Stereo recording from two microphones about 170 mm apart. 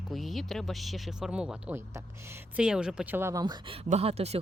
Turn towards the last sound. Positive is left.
turn(degrees=-40)  # may be behind; listen again after turning